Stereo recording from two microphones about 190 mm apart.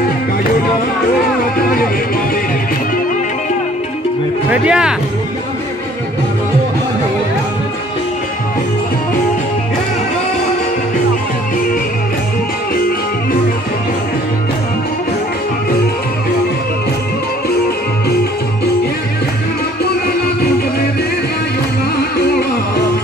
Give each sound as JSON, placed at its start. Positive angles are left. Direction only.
{"t": 1.6, "sound": "music", "side_deg": 50}
{"t": 4.5, "sound": "speech", "side_deg": -5}